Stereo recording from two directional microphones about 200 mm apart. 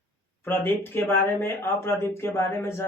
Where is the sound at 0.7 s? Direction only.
10° left (ahead or behind).